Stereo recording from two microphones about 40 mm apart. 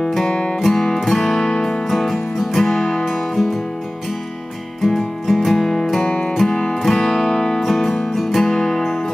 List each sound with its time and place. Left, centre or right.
0.0 s music: centre
0.3 s music: centre
0.6 s music: centre
4.8 s music: centre
6.0 s music: left
6.8 s music: centre